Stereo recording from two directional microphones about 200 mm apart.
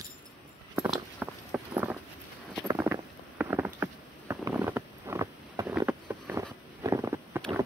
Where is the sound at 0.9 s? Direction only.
5° right (ahead or behind).